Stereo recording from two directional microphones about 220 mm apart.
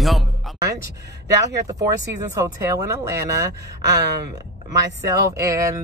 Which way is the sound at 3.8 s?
50° right (ahead or behind).